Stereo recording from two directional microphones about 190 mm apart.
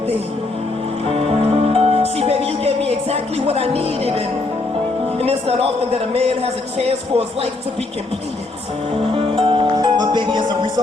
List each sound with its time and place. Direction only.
1.0 s music: 30° right (ahead or behind)
5.1 s a man's voice: 30° right (ahead or behind)
9.1 s music: 25° right (ahead or behind)